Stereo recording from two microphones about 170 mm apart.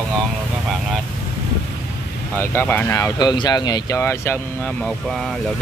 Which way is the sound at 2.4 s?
10° left (ahead or behind).